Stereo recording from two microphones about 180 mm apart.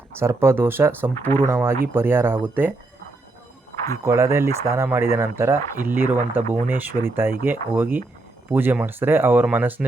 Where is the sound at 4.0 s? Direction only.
15° right (ahead or behind).